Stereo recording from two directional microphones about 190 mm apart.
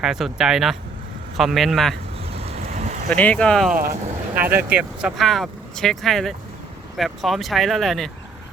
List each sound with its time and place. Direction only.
0.0 s speech: centre (ahead or behind)
2.3 s vehicle: 30° right (ahead or behind)
3.1 s speech: 5° left (ahead or behind)
4.4 s speech: 10° right (ahead or behind)